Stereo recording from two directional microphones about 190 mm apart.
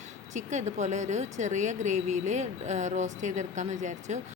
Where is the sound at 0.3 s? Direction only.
40° right (ahead or behind).